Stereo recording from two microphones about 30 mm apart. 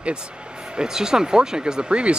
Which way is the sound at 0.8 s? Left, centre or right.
Right.